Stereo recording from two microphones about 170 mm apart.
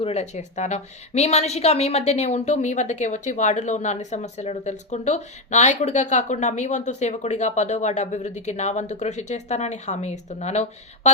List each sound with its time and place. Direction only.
0.0 s a woman's voice: 40° left (ahead or behind)